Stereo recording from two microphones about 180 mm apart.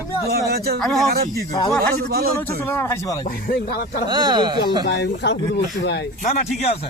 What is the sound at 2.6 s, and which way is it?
Speech, 10° left (ahead or behind).